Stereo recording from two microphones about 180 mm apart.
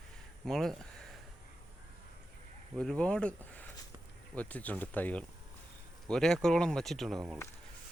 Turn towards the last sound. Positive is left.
turn(degrees=0)  # may be behind; listen again after turning